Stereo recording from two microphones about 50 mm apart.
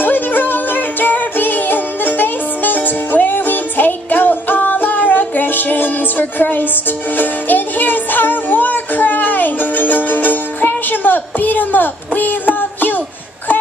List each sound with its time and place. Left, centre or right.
0.0 s music: left